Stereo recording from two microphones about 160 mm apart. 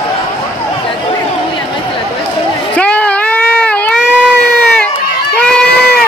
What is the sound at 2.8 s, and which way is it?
Baby cry, 10° left (ahead or behind).